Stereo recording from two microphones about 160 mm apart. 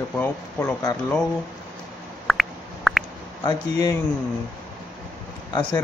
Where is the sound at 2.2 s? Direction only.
Centre (ahead or behind).